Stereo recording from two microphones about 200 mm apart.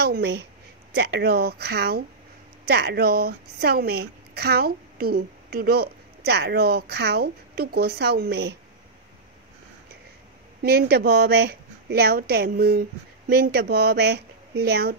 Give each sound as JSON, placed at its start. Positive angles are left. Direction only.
{"t": 0.0, "sound": "a woman's voice", "side_deg": -55}
{"t": 10.6, "sound": "speech", "side_deg": -55}